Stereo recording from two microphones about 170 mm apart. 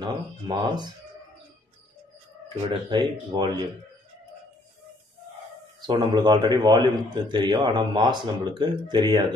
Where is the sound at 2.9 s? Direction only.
25° right (ahead or behind).